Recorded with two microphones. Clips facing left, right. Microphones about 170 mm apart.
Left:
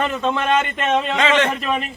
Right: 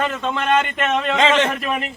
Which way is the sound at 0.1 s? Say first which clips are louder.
Left 1 dB; centre (ahead or behind).